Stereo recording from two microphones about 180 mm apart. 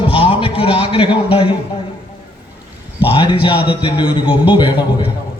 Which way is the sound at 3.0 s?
30° left (ahead or behind).